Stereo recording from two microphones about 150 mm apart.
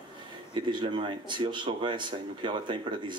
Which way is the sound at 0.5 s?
30° right (ahead or behind).